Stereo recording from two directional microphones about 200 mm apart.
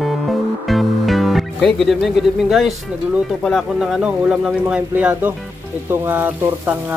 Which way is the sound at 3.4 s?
Centre (ahead or behind).